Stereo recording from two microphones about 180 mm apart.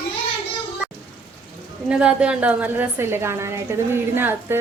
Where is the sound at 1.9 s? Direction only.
5° right (ahead or behind).